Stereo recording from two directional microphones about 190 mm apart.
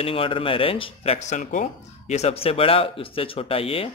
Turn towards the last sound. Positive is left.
turn(degrees=30)  # may be behind; listen again after turning